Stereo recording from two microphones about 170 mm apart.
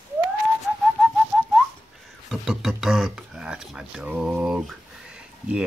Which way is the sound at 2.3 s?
Centre (ahead or behind).